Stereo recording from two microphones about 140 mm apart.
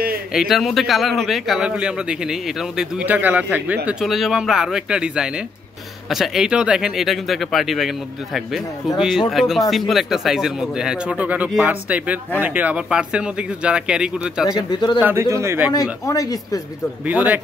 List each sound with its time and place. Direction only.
0.3 s a man's voice: centre (ahead or behind)
8.9 s a man's voice: 5° right (ahead or behind)
14.4 s speech: 30° left (ahead or behind)
15.0 s speech: 15° right (ahead or behind)
15.7 s speech: 25° left (ahead or behind)
17.0 s speech: 10° right (ahead or behind)